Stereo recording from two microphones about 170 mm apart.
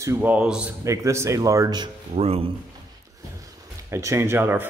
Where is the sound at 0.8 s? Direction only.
15° right (ahead or behind).